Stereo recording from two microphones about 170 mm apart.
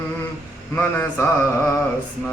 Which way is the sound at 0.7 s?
10° left (ahead or behind).